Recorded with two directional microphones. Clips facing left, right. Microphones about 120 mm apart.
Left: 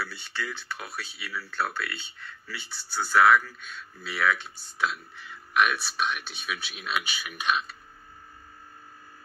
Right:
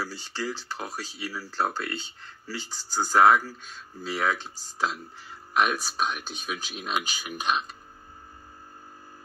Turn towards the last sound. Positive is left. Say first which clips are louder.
# right 2 dB
turn(degrees=-35)  # may be behind; listen again after turning